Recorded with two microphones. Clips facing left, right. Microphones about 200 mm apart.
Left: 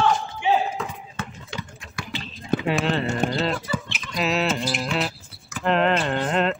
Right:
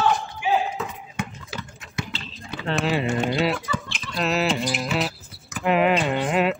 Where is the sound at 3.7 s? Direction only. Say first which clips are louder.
Left 1 dB; 5° left (ahead or behind).